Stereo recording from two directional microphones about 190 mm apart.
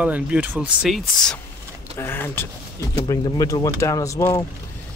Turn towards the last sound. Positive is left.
turn(degrees=15)  # may be behind; listen again after turning